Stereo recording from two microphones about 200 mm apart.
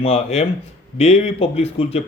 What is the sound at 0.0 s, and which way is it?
Speech, 30° left (ahead or behind).